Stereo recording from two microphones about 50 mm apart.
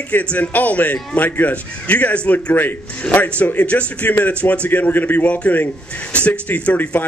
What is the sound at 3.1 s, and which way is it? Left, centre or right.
A man's voice, left.